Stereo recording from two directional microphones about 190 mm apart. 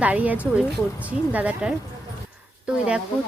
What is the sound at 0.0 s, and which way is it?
A woman's voice, 10° right (ahead or behind).